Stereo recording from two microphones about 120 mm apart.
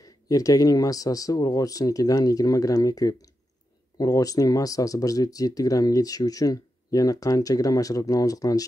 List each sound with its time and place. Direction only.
0.0 s speech: 30° left (ahead or behind)